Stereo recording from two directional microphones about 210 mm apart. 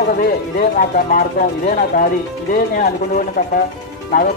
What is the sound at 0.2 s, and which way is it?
Speech, 45° left (ahead or behind).